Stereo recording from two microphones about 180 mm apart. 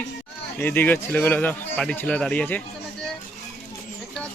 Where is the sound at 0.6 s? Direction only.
10° left (ahead or behind).